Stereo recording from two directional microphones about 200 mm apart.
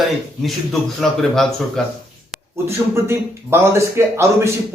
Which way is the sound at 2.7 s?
15° right (ahead or behind).